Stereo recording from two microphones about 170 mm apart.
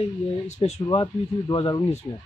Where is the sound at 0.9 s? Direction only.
25° left (ahead or behind).